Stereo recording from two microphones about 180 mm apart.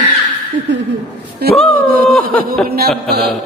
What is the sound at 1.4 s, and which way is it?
Speech, 60° right (ahead or behind).